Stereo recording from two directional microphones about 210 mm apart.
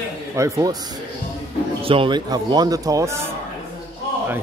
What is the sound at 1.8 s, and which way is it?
Speech, 25° right (ahead or behind).